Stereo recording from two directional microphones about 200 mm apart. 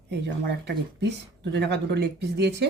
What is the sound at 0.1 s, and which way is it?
Speech, 60° right (ahead or behind).